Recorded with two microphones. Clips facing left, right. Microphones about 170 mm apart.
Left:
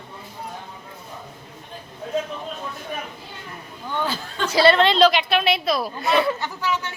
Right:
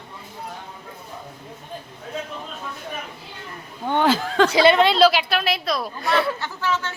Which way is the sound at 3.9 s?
80° right.